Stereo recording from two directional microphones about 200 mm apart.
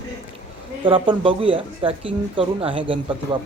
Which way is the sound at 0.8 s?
25° right (ahead or behind).